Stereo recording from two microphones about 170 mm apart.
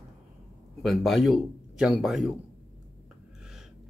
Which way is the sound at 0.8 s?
Centre (ahead or behind).